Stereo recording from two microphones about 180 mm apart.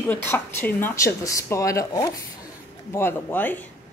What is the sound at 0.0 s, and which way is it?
Speech, 10° left (ahead or behind).